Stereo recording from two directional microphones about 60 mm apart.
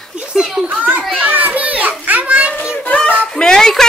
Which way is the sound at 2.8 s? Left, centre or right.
Left.